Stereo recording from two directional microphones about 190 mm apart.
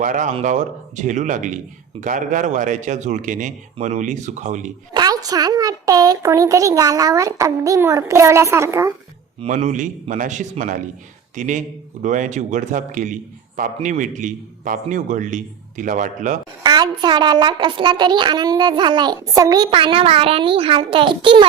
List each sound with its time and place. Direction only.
0.0 s a man's voice: 45° right (ahead or behind)
4.9 s speech: 20° right (ahead or behind)
9.4 s a man's voice: 35° right (ahead or behind)
16.6 s a child's voice: 20° right (ahead or behind)